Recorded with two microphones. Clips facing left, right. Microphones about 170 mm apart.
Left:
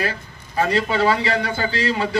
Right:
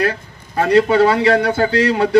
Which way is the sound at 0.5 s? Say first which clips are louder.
Right 7 dB; 60° right (ahead or behind).